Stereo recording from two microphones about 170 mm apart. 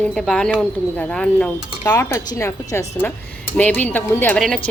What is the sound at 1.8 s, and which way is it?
A woman's voice, 20° left (ahead or behind).